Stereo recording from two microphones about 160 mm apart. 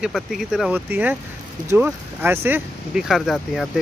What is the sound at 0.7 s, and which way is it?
Speech, 10° right (ahead or behind).